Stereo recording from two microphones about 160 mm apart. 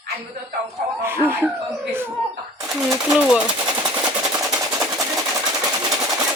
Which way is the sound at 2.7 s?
5° right (ahead or behind).